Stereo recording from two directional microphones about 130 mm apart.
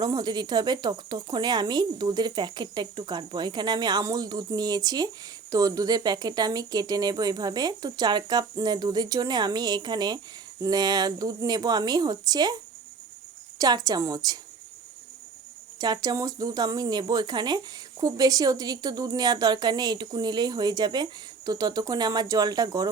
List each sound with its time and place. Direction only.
0.0 s speech: 35° right (ahead or behind)
13.6 s a woman's voice: 30° right (ahead or behind)
15.8 s speech: 30° right (ahead or behind)